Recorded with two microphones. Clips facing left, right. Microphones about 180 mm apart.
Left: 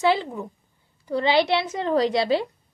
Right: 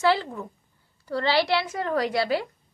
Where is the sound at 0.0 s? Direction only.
20° left (ahead or behind).